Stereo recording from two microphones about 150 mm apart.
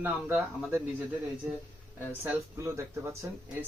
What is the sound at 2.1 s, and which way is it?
Speech, 15° right (ahead or behind).